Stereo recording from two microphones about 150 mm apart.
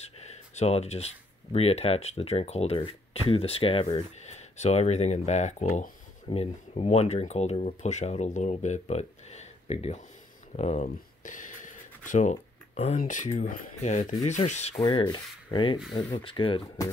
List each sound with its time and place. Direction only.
0.0 s speech: 45° left (ahead or behind)
6.2 s speech: 40° left (ahead or behind)
10.5 s a sound: 45° left (ahead or behind)
13.0 s speech: 55° left (ahead or behind)
14.9 s rub: 30° left (ahead or behind)